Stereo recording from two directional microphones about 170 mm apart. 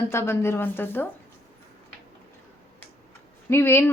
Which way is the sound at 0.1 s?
15° left (ahead or behind).